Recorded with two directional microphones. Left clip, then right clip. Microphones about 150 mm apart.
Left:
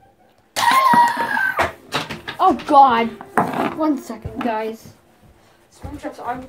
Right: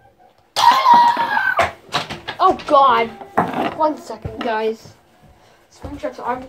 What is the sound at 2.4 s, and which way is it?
Speech, 45° left (ahead or behind).